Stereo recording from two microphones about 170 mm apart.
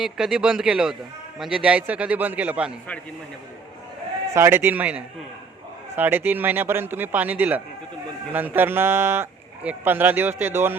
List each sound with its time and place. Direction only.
0.0 s speech: 5° right (ahead or behind)
4.4 s speech: 15° right (ahead or behind)